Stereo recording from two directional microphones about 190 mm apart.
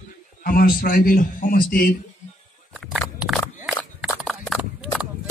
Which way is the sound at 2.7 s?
Centre (ahead or behind).